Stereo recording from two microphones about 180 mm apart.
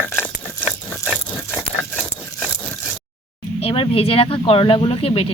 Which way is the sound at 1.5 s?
5° left (ahead or behind).